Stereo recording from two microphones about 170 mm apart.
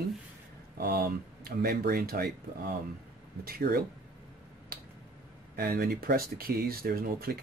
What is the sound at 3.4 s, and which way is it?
Speech, 60° right (ahead or behind).